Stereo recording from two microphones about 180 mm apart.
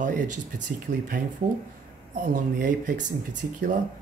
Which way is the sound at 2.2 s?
45° right (ahead or behind).